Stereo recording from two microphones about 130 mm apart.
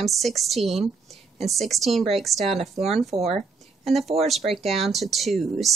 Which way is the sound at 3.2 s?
55° right (ahead or behind).